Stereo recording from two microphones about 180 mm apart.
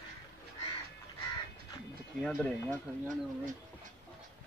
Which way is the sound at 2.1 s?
5° left (ahead or behind).